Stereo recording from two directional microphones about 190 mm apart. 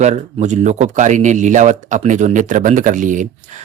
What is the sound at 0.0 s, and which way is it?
Speech, 35° right (ahead or behind).